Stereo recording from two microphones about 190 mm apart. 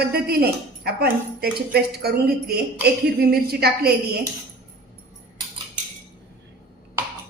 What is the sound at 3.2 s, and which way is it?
Speech, 55° right (ahead or behind).